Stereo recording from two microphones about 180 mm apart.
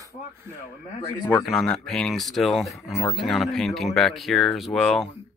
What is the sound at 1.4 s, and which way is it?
Speech, centre (ahead or behind).